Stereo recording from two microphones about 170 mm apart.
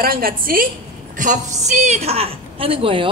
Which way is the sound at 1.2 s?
45° right (ahead or behind).